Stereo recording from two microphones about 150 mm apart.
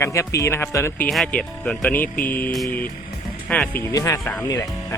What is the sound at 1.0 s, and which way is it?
Speech, 5° left (ahead or behind).